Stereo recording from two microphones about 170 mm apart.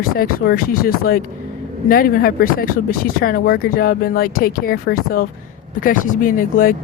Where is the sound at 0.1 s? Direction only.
60° left (ahead or behind).